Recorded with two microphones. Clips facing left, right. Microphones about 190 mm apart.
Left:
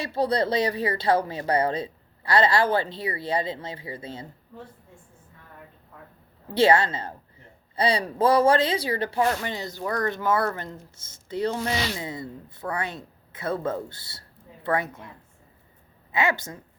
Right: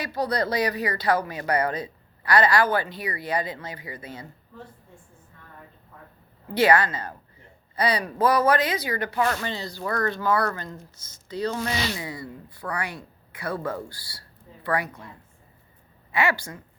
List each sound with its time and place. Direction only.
0.0 s speech: 25° left (ahead or behind)
6.5 s speech: 25° left (ahead or behind)
9.3 s speech: 15° left (ahead or behind)
16.1 s speech: 20° left (ahead or behind)